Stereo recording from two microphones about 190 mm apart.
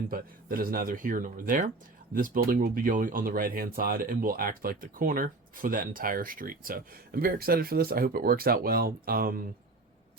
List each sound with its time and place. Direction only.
0.1 s speech: 50° right (ahead or behind)